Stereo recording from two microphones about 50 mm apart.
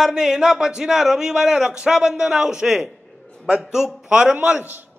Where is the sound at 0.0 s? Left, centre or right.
Centre.